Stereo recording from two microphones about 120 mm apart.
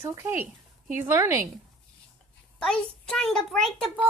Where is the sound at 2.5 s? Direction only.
5° left (ahead or behind).